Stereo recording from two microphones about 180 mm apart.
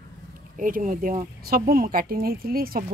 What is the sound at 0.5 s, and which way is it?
A woman's voice, 50° right (ahead or behind).